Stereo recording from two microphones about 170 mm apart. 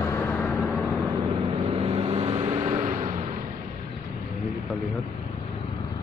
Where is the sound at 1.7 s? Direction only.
35° right (ahead or behind); by 3.2 s 50° right (ahead or behind).